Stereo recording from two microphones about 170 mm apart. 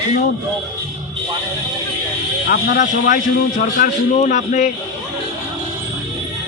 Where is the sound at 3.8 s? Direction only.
45° left (ahead or behind).